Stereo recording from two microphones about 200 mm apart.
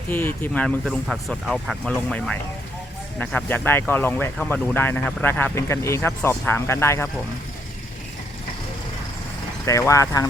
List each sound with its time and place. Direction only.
0.1 s speech: 10° left (ahead or behind)
9.6 s speech: 15° left (ahead or behind)